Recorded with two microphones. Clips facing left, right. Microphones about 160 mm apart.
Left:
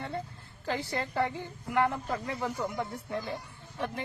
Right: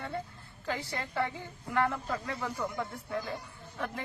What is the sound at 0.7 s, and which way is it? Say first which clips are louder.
A woman's voice: left 3 dB; 25° left (ahead or behind).